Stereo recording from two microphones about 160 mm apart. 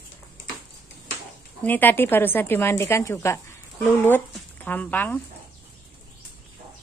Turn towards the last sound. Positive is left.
turn(degrees=10)  # may be behind; listen again after turning